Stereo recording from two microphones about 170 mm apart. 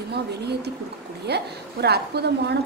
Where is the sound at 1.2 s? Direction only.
75° right (ahead or behind).